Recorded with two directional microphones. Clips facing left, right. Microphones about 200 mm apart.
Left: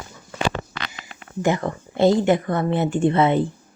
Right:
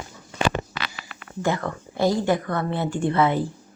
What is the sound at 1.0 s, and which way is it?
Speech, 20° left (ahead or behind).